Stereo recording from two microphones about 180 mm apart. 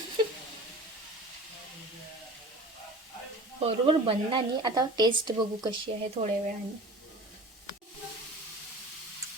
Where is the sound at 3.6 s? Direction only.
35° right (ahead or behind).